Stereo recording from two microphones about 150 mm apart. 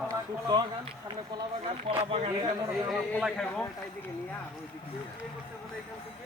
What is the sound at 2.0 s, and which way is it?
Speech, 40° right (ahead or behind).